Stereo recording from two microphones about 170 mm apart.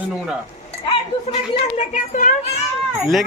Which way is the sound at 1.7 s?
50° left (ahead or behind).